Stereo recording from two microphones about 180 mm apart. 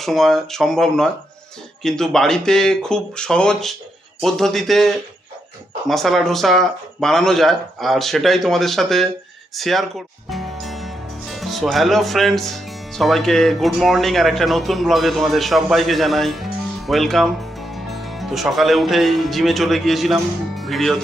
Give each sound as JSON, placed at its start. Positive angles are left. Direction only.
{"t": 0.0, "sound": "speech", "side_deg": 0}